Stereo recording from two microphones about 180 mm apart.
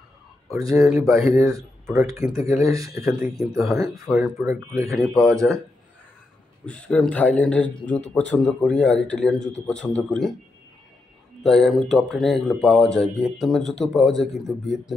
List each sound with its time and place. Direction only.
0.5 s speech: 20° right (ahead or behind)
0.8 s speech: centre (ahead or behind)
1.2 s speech: 15° right (ahead or behind)
3.1 s speech: centre (ahead or behind)
4.5 s speech: 15° right (ahead or behind)
4.9 s speech: centre (ahead or behind)
6.6 s a man's voice: 5° left (ahead or behind)
11.4 s speech: centre (ahead or behind)